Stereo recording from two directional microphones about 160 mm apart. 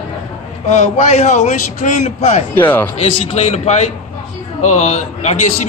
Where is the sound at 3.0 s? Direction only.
45° left (ahead or behind).